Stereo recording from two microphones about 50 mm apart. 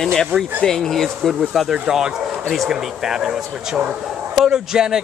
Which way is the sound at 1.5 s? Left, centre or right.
Centre.